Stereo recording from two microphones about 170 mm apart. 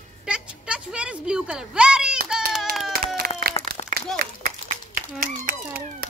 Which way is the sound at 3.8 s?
40° left (ahead or behind).